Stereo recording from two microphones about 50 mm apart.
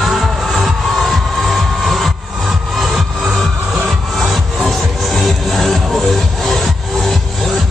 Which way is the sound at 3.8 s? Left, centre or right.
Centre.